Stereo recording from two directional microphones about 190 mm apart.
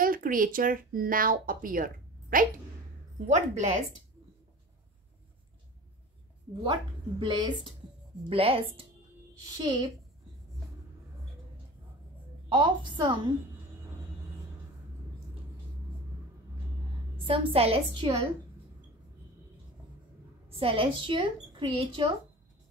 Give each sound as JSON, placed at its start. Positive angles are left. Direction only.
{"t": 0.0, "sound": "speech", "side_deg": -45}
{"t": 6.5, "sound": "a woman's voice", "side_deg": -25}
{"t": 12.4, "sound": "a woman's voice", "side_deg": -25}
{"t": 17.3, "sound": "a woman's voice", "side_deg": -30}
{"t": 20.4, "sound": "a woman's voice", "side_deg": -30}